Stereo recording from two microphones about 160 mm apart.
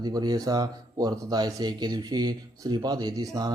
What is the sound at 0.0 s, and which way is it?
Speech, 25° right (ahead or behind).